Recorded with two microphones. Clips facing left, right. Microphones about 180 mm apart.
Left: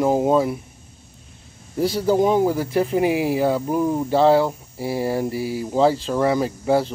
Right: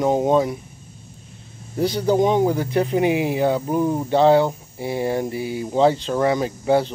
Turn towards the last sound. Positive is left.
turn(degrees=0)  # may be behind; listen again after turning